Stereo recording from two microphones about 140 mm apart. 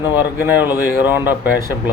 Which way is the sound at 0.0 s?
15° right (ahead or behind).